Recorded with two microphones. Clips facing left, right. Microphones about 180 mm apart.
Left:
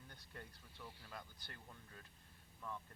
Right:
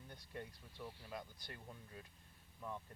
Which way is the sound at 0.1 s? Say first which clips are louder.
Right 7 dB; 15° right (ahead or behind).